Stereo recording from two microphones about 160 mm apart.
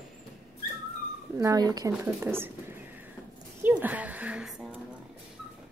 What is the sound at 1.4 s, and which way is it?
A woman's voice, 25° right (ahead or behind).